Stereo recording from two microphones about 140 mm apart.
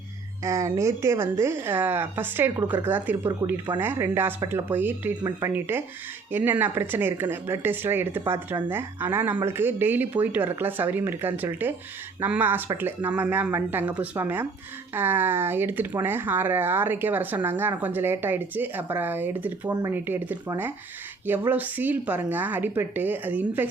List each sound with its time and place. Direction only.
0.4 s speech: 20° right (ahead or behind)